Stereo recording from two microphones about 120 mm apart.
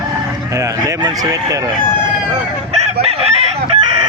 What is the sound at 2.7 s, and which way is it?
Chicken, 60° right (ahead or behind).